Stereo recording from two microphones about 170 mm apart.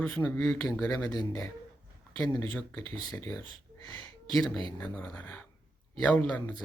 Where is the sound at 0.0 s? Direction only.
10° left (ahead or behind).